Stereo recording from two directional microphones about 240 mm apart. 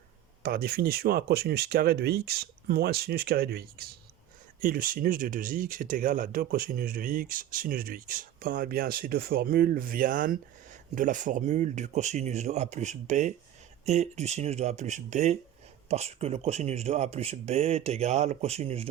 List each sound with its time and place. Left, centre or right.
0.4 s speech: right